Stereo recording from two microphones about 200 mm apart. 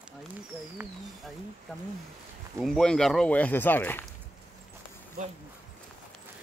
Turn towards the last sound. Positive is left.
turn(degrees=-40)  # may be behind; listen again after turning